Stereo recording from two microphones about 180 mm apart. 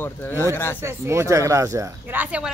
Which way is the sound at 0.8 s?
15° right (ahead or behind).